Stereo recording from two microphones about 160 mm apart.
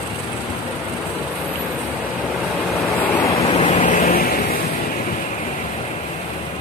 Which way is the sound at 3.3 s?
40° left (ahead or behind).